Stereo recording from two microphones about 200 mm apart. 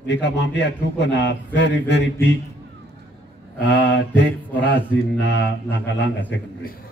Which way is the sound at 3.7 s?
60° left (ahead or behind).